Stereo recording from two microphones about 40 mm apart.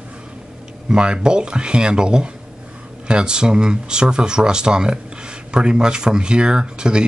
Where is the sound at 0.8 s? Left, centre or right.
Right.